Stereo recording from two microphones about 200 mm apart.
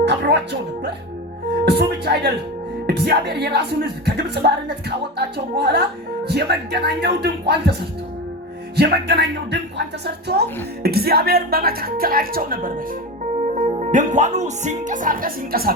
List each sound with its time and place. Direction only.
0.0 s music: 60° right (ahead or behind)
1.6 s speech: 55° right (ahead or behind)
2.8 s music: 55° right (ahead or behind)
10.8 s speech: 50° right (ahead or behind)
13.7 s speech: 35° right (ahead or behind)